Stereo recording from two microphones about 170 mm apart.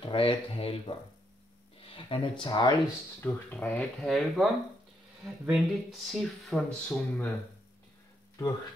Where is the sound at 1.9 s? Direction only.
30° left (ahead or behind).